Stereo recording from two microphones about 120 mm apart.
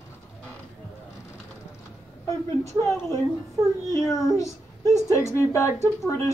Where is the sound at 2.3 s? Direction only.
25° left (ahead or behind).